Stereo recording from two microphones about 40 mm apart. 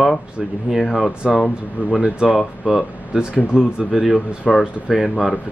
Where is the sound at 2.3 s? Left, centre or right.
Centre.